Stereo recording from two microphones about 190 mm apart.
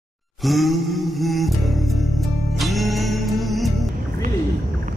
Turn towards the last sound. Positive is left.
turn(degrees=0)  # may be behind; listen again after turning